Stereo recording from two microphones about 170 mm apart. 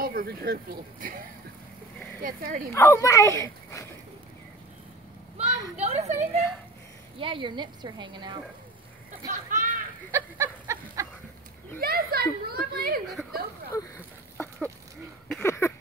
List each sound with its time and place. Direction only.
0.0 s speech: 60° right (ahead or behind)
2.2 s speech: 55° right (ahead or behind)
2.7 s speech: 15° left (ahead or behind)
5.8 s a woman's voice: 40° right (ahead or behind)
7.2 s a woman's voice: 30° right (ahead or behind)
9.3 s speech: 50° right (ahead or behind)
10.1 s fowl: 15° right (ahead or behind)
11.8 s speech: 65° right (ahead or behind)
13.1 s a sound: centre (ahead or behind)
13.7 s a sound: 15° left (ahead or behind)
15.4 s speech: 15° left (ahead or behind)